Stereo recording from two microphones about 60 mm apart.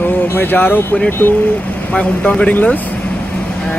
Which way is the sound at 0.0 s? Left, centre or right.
Left.